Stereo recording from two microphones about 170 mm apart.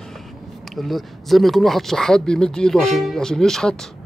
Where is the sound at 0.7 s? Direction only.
Centre (ahead or behind).